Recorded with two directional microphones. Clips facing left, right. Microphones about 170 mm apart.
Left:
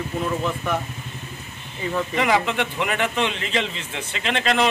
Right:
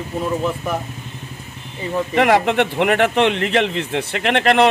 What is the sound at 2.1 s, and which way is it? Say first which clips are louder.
A man's voice: right 7 dB; 65° right (ahead or behind).